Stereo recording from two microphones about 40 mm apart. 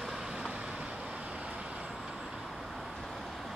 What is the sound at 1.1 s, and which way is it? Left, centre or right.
Vehicle, right.